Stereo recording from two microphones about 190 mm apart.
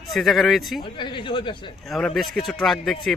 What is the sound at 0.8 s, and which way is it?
Speech, 25° left (ahead or behind).